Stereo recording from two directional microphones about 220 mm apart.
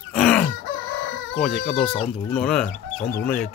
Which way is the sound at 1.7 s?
30° left (ahead or behind).